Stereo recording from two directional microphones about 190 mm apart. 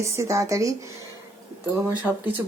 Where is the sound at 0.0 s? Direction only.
15° right (ahead or behind).